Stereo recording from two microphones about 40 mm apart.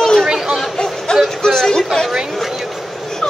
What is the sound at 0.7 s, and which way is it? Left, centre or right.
Music, centre.